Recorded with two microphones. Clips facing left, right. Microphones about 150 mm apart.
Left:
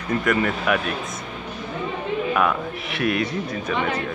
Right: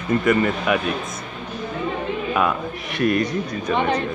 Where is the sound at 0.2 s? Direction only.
Centre (ahead or behind).